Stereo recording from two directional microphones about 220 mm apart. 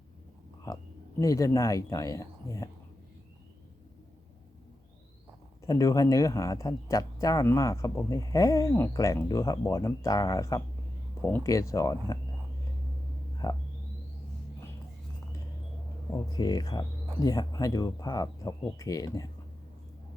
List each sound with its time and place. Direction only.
1.2 s speech: 15° left (ahead or behind)
5.6 s speech: 15° left (ahead or behind)
13.4 s speech: 15° left (ahead or behind)
16.1 s speech: 15° left (ahead or behind)